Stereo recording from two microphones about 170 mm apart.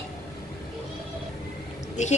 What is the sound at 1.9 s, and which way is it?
Speech, 45° left (ahead or behind).